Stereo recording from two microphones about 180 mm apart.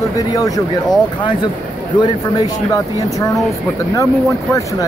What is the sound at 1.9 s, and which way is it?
Speech, 25° left (ahead or behind).